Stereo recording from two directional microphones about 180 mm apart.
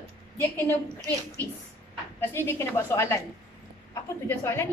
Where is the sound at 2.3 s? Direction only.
15° left (ahead or behind).